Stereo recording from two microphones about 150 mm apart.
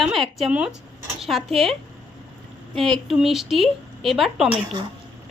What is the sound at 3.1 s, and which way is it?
A woman's voice, centre (ahead or behind).